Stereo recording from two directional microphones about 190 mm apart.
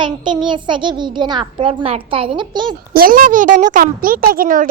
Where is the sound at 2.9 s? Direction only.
50° right (ahead or behind).